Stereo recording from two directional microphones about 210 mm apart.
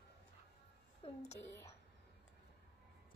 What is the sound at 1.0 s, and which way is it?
Speech, 25° left (ahead or behind).